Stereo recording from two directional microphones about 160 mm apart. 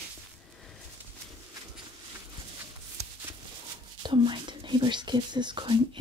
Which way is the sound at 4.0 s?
30° right (ahead or behind).